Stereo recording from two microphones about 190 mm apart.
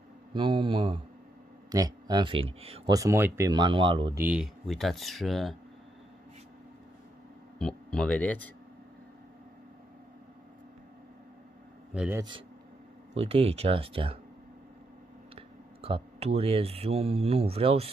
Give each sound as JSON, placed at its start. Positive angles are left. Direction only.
{"t": 0.3, "sound": "speech", "side_deg": -25}
{"t": 3.0, "sound": "speech", "side_deg": -15}
{"t": 4.2, "sound": "speech", "side_deg": -5}
{"t": 7.5, "sound": "speech", "side_deg": 5}
{"t": 11.9, "sound": "speech", "side_deg": -5}
{"t": 12.2, "sound": "speech", "side_deg": -25}
{"t": 15.3, "sound": "speech", "side_deg": -30}